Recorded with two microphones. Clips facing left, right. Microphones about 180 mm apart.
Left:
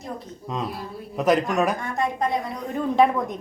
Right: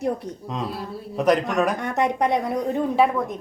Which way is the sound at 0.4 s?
Centre (ahead or behind).